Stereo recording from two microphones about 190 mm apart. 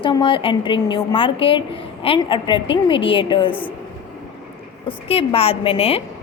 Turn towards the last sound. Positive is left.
turn(degrees=30)  # may be behind; listen again after turning